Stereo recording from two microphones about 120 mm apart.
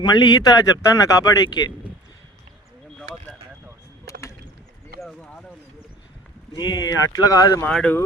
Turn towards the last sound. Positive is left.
turn(degrees=10)  # may be behind; listen again after turning